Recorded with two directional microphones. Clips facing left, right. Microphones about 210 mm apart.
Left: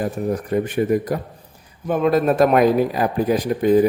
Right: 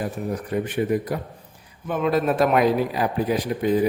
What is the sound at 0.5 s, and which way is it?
Speech, 45° left (ahead or behind).